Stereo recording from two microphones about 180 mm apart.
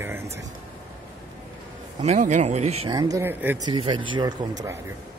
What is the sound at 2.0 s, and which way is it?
Speech, 40° right (ahead or behind).